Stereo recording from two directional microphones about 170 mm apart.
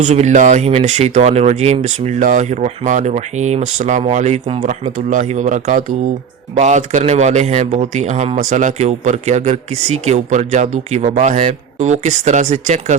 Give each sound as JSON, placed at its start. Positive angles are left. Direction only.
{"t": 0.0, "sound": "a man's voice", "side_deg": -40}